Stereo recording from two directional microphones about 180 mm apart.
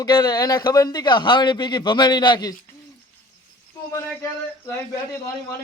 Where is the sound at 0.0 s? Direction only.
25° left (ahead or behind).